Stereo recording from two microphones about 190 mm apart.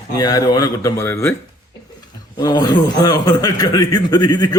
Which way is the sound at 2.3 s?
20° left (ahead or behind).